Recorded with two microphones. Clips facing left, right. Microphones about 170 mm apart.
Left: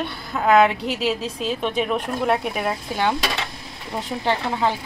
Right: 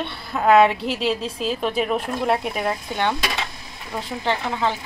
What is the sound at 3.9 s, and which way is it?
Speech, 15° left (ahead or behind).